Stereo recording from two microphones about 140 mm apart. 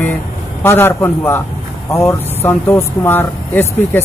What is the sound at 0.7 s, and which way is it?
Speech, 15° left (ahead or behind).